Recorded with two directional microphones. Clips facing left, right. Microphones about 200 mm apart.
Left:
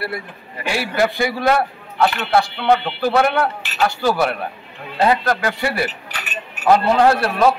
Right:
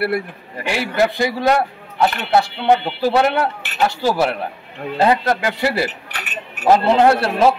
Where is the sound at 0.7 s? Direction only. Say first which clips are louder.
Right 1 dB; 20° right (ahead or behind).